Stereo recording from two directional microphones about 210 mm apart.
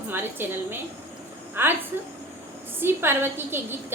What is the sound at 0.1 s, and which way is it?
A woman's voice, 10° right (ahead or behind).